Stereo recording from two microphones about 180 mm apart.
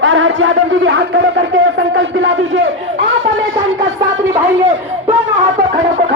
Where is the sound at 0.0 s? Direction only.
90° right.